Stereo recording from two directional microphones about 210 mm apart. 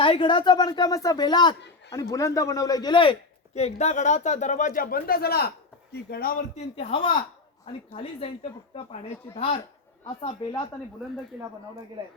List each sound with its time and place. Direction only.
0.0 s a man's voice: 25° left (ahead or behind)
10.2 s speech: 20° left (ahead or behind)